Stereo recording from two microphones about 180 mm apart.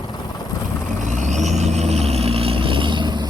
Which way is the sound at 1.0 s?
40° right (ahead or behind).